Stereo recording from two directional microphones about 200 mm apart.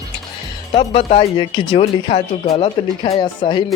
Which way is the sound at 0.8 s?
30° left (ahead or behind).